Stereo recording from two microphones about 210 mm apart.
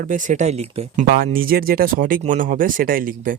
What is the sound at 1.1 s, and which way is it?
Speech, 45° right (ahead or behind).